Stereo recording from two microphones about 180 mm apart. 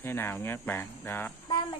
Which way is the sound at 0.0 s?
10° left (ahead or behind).